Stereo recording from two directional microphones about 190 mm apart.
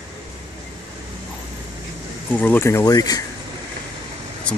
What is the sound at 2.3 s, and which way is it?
Speech, 10° left (ahead or behind).